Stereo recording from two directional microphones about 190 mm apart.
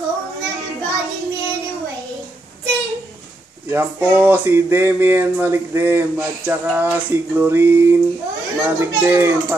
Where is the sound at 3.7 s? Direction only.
10° right (ahead or behind).